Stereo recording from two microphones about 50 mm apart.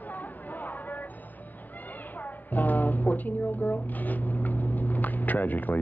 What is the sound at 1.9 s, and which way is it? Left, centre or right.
A woman's voice, left.